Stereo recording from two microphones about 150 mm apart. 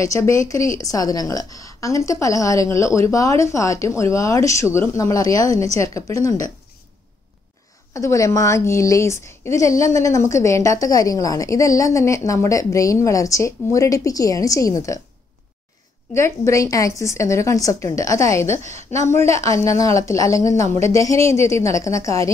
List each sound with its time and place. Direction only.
0.0 s a woman's voice: 20° left (ahead or behind)
7.9 s a woman's voice: 20° left (ahead or behind)
16.1 s a woman's voice: 20° left (ahead or behind)
18.5 s a woman's voice: 50° right (ahead or behind)
19.0 s a woman's voice: 20° left (ahead or behind)